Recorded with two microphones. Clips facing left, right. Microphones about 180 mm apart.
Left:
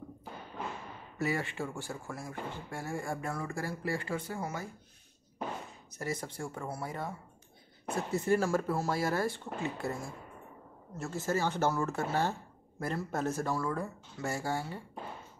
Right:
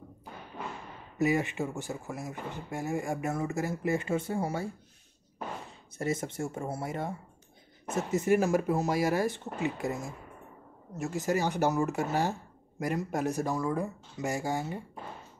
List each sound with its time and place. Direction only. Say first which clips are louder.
1.1 s speech: right 6 dB; 20° right (ahead or behind)
5.9 s speech: right 5 dB; 25° right (ahead or behind)